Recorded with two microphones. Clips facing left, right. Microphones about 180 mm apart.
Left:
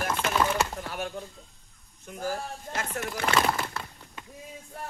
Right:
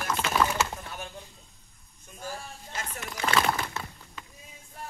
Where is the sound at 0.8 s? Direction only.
75° left (ahead or behind).